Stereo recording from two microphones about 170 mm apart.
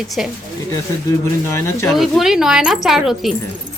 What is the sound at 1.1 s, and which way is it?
Speech, 15° left (ahead or behind).